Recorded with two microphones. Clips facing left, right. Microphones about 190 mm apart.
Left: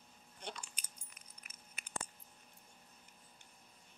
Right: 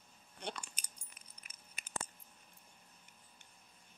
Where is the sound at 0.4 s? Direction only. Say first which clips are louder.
Right 3 dB; 65° right (ahead or behind).